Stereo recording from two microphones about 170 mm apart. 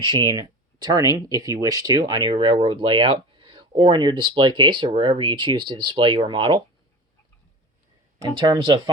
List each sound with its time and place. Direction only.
0.0 s speech: 30° right (ahead or behind)
8.4 s speech: 30° right (ahead or behind)